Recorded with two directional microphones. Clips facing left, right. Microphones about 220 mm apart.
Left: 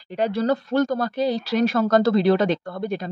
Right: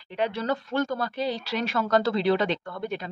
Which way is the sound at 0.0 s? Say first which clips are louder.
Left 6 dB; 40° left (ahead or behind).